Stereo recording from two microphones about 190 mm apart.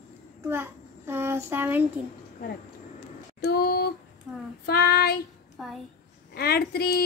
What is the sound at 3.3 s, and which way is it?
Female singing, 55° left (ahead or behind).